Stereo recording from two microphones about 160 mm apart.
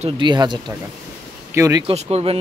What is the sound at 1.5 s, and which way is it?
Speech, 20° right (ahead or behind).